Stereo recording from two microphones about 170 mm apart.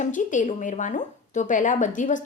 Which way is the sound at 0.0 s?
50° left (ahead or behind).